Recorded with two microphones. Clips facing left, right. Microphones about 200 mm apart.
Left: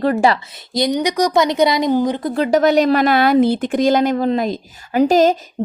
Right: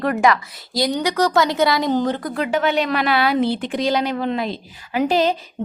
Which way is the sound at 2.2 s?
35° left (ahead or behind).